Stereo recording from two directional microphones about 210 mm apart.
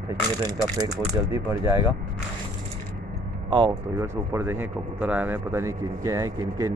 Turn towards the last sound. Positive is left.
turn(degrees=-15)  # may be behind; listen again after turning